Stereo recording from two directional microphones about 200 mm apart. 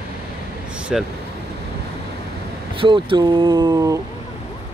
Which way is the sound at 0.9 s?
Centre (ahead or behind).